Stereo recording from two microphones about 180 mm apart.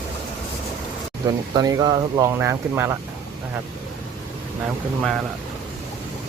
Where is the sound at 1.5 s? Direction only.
20° right (ahead or behind).